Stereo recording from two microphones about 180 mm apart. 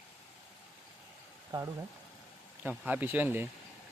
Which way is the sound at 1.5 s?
25° right (ahead or behind).